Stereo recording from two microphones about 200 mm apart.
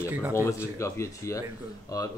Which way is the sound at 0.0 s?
5° right (ahead or behind).